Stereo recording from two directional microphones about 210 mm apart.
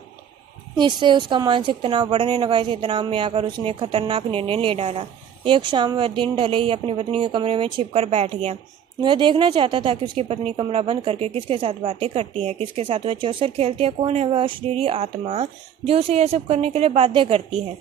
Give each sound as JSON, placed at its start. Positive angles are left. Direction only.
{"t": 0.7, "sound": "a woman's voice", "side_deg": -20}